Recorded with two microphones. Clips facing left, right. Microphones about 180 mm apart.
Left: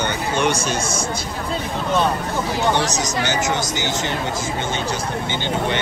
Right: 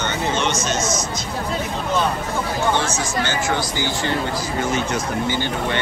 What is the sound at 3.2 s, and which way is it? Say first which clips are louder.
Speech: even; 20° left (ahead or behind).